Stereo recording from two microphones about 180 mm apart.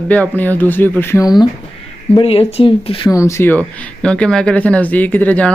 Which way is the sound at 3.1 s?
15° left (ahead or behind).